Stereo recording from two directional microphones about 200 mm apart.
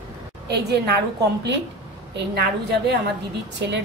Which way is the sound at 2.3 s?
55° right (ahead or behind).